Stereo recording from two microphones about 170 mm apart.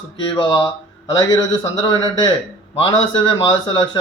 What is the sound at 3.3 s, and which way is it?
Speech, 25° left (ahead or behind).